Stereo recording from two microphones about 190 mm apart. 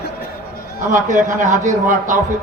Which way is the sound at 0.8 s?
40° right (ahead or behind).